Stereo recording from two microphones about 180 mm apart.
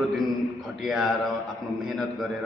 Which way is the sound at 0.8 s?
Centre (ahead or behind).